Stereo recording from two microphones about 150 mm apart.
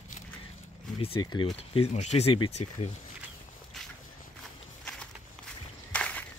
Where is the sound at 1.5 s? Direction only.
45° left (ahead or behind).